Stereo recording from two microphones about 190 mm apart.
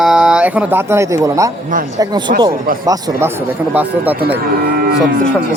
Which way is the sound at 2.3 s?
45° right (ahead or behind).